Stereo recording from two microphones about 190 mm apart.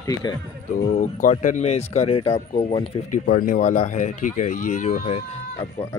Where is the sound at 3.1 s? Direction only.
45° left (ahead or behind).